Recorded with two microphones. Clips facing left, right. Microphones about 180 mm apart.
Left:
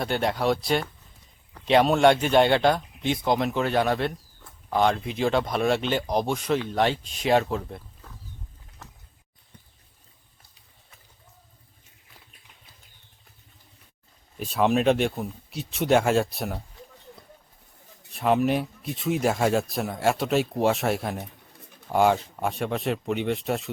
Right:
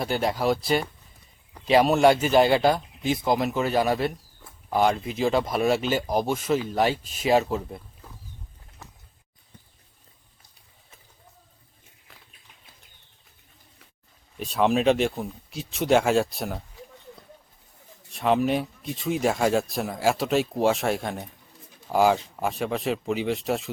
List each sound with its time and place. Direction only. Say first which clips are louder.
0.0 s speech: even; centre (ahead or behind)
14.3 s speech: even; centre (ahead or behind)
18.1 s speech: even; centre (ahead or behind)